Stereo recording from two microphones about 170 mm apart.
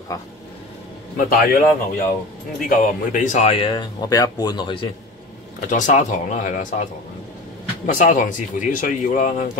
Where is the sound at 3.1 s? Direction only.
45° left (ahead or behind); by 4.9 s 30° left (ahead or behind).